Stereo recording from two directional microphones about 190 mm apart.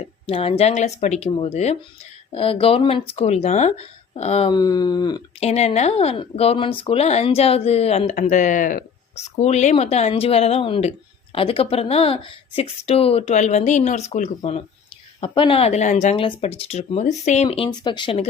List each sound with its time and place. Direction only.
0.0 s speech: 30° left (ahead or behind)
4.5 s speech: 20° left (ahead or behind)
5.5 s speech: 35° left (ahead or behind)